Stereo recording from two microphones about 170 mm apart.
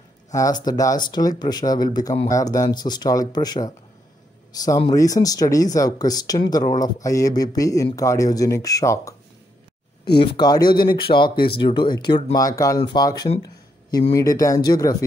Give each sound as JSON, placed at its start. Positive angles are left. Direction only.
{"t": 0.3, "sound": "speech", "side_deg": 20}
{"t": 10.1, "sound": "speech", "side_deg": 25}
{"t": 13.4, "sound": "a sound", "side_deg": 25}
{"t": 14.1, "sound": "speech", "side_deg": 20}